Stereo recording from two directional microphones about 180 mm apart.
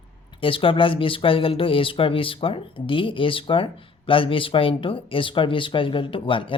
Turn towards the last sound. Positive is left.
turn(degrees=30)  # may be behind; listen again after turning